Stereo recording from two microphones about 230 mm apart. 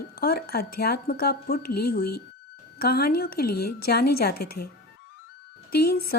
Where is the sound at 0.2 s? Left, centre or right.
Left.